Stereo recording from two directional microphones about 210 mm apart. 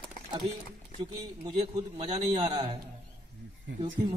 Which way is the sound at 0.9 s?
25° right (ahead or behind).